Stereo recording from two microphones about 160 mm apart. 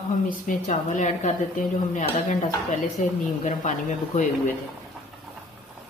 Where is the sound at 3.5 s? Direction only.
50° left (ahead or behind).